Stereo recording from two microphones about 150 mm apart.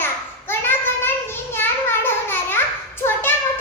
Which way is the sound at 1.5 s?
15° left (ahead or behind).